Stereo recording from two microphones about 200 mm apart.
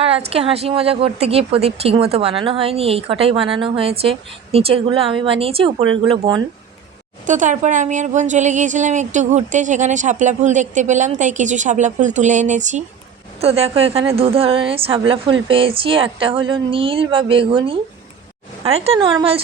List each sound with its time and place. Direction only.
0.0 s a woman's voice: 30° right (ahead or behind)
7.3 s a woman's voice: 40° right (ahead or behind)